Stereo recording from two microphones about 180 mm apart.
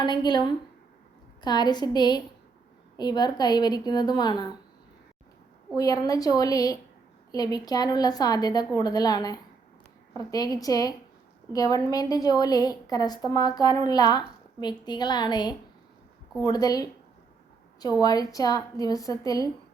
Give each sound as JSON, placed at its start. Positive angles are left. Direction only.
{"t": 0.0, "sound": "a woman's voice", "side_deg": 25}
{"t": 5.7, "sound": "a woman's voice", "side_deg": 20}
{"t": 18.0, "sound": "a woman's voice", "side_deg": 20}